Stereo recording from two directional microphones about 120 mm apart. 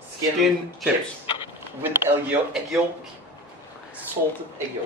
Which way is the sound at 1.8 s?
20° right (ahead or behind).